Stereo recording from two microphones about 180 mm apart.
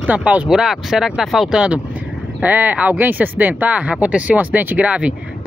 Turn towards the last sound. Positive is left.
turn(degrees=-5)  # may be behind; listen again after turning